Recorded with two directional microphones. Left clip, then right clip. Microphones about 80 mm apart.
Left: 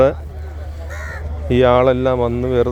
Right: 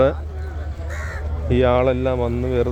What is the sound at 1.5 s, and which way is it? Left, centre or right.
Speech, left.